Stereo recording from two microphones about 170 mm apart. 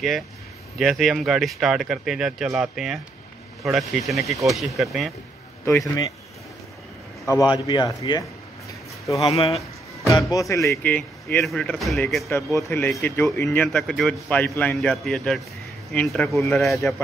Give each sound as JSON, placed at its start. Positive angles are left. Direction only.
{"t": 0.7, "sound": "speech", "side_deg": 0}
{"t": 5.7, "sound": "speech", "side_deg": 20}
{"t": 7.5, "sound": "speech", "side_deg": 25}
{"t": 12.5, "sound": "speech", "side_deg": 15}
{"t": 13.7, "sound": "speech", "side_deg": 0}
{"t": 16.3, "sound": "speech", "side_deg": 15}
{"t": 16.6, "sound": "speech", "side_deg": 0}